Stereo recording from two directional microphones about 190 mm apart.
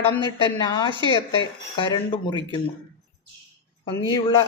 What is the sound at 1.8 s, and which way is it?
Speech, 25° left (ahead or behind).